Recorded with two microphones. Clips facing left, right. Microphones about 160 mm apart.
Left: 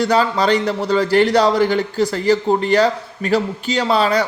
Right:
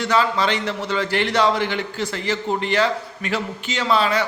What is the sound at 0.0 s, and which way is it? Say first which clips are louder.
A man's voice: left 4 dB; 35° left (ahead or behind).